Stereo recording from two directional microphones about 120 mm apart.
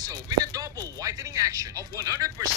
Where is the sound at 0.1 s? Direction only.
30° right (ahead or behind).